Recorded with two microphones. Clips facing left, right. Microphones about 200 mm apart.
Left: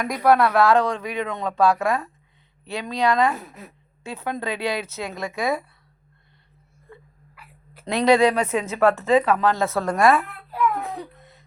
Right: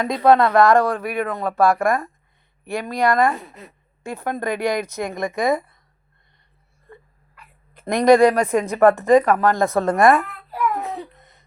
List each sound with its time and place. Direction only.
0.0 s a woman's voice: 20° right (ahead or behind)
3.3 s a woman's voice: 5° left (ahead or behind)
4.0 s a woman's voice: 10° right (ahead or behind)
7.3 s a sound: 5° left (ahead or behind)
7.9 s a woman's voice: 15° right (ahead or behind)
10.8 s a woman's voice: centre (ahead or behind)